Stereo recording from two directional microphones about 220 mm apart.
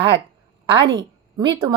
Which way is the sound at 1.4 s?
20° right (ahead or behind).